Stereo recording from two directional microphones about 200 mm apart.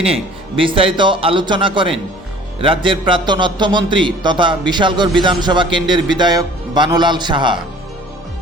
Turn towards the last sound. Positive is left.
turn(degrees=-25)  # may be behind; listen again after turning